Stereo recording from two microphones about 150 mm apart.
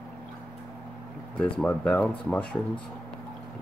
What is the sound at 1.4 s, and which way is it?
Speech, 10° left (ahead or behind).